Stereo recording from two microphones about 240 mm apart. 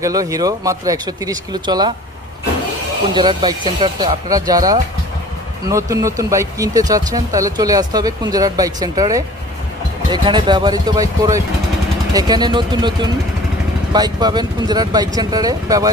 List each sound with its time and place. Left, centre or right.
0.0 s speech: centre
3.2 s speech: centre